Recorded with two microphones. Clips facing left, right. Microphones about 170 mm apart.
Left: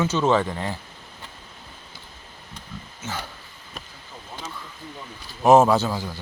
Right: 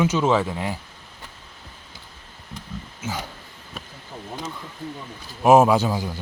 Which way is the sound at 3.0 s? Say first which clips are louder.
Right 2 dB; 15° right (ahead or behind).